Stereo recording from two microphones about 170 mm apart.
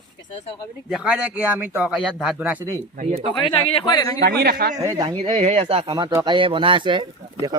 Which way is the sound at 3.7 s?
30° left (ahead or behind).